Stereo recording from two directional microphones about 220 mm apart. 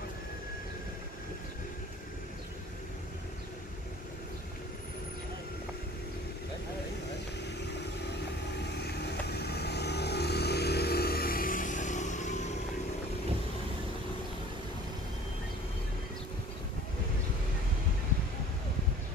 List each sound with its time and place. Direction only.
8.7 s vehicle: 50° left (ahead or behind); by 12.4 s 35° left (ahead or behind)